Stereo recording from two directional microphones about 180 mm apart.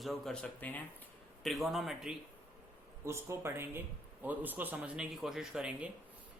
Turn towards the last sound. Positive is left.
turn(degrees=-5)  # may be behind; listen again after turning